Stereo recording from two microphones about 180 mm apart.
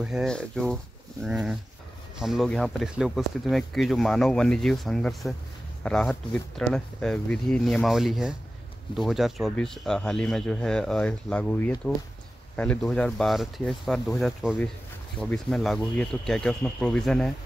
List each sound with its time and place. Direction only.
0.0 s speech: centre (ahead or behind)